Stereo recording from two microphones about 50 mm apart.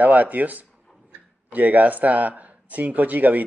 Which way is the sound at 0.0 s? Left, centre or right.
Right.